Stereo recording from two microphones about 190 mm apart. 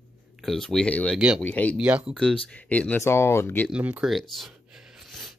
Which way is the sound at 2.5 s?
5° left (ahead or behind).